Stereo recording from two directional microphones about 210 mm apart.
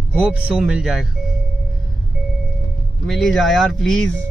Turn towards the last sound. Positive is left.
turn(degrees=5)  # may be behind; listen again after turning